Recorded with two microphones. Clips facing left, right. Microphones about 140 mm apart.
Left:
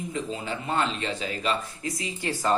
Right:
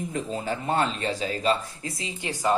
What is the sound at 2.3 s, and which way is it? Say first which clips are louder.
Speech: right 1 dB; 15° right (ahead or behind).